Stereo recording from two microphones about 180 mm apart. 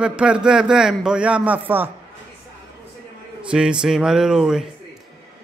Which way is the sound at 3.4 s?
5° right (ahead or behind).